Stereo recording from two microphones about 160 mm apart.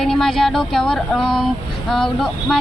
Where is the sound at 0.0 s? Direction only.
Centre (ahead or behind).